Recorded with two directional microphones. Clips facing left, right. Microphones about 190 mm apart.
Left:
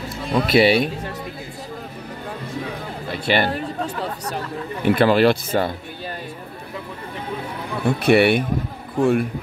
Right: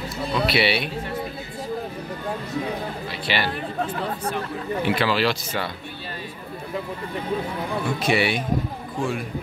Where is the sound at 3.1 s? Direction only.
50° left (ahead or behind).